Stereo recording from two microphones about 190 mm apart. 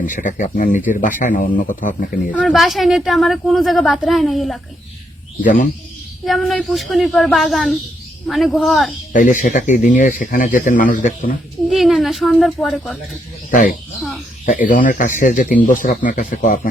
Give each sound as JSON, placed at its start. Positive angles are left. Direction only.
{"t": 0.0, "sound": "speech", "side_deg": 45}
{"t": 2.3, "sound": "a woman's voice", "side_deg": 0}
{"t": 6.2, "sound": "a woman's voice", "side_deg": 0}
{"t": 9.1, "sound": "speech", "side_deg": 45}
{"t": 11.7, "sound": "speech", "side_deg": 0}
{"t": 13.5, "sound": "speech", "side_deg": 45}